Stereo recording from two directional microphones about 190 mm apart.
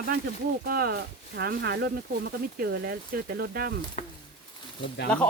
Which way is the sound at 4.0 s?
40° left (ahead or behind).